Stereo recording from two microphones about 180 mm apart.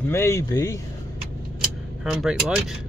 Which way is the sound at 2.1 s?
5° right (ahead or behind).